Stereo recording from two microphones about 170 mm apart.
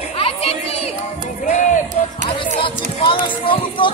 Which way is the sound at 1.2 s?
50° left (ahead or behind).